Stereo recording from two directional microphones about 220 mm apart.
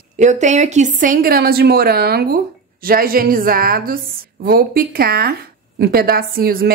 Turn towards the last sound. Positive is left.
turn(degrees=-45)  # may be behind; listen again after turning